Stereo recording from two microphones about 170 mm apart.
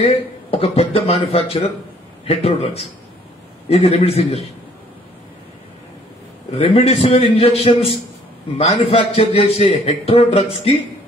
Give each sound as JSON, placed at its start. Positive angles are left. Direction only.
{"t": 0.5, "sound": "a man's voice", "side_deg": 35}
{"t": 6.5, "sound": "a man's voice", "side_deg": 35}